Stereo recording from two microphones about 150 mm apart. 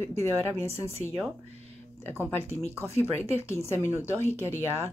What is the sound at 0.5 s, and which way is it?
Speech, 40° right (ahead or behind).